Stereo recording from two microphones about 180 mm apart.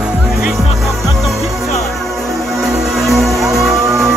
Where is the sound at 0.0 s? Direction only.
5° right (ahead or behind).